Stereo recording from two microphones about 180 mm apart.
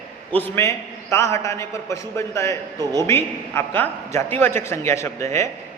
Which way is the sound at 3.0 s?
10° left (ahead or behind).